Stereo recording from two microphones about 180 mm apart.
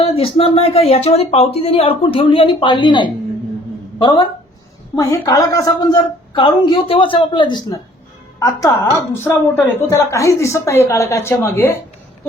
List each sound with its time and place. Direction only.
0.0 s a woman's voice: 35° left (ahead or behind); by 11.8 s 15° left (ahead or behind)